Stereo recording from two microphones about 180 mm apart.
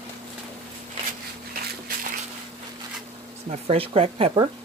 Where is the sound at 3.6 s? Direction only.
30° right (ahead or behind).